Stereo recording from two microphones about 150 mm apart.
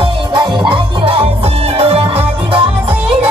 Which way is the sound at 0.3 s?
30° right (ahead or behind).